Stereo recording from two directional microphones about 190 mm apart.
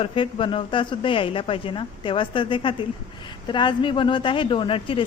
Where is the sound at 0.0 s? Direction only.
25° left (ahead or behind).